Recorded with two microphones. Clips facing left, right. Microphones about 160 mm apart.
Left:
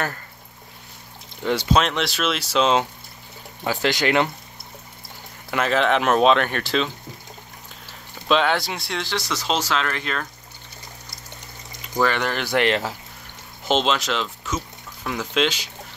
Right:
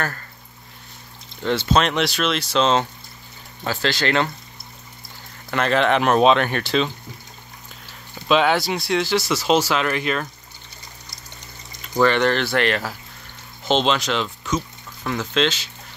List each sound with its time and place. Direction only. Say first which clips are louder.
1.4 s speech: right 1 dB; 10° left (ahead or behind)
1.9 s speech: right 2 dB; centre (ahead or behind)
5.5 s speech: right 1 dB; 5° left (ahead or behind)
8.3 s speech: right 2 dB; 5° right (ahead or behind)
12.0 s speech: right 4 dB; 5° left (ahead or behind)
13.7 s speech: right 1 dB; 5° left (ahead or behind)